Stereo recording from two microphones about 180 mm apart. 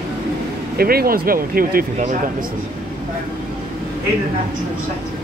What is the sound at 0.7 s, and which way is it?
Speech, 55° right (ahead or behind).